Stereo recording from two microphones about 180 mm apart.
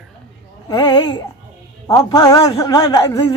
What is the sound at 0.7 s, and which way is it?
A man's voice, 25° left (ahead or behind).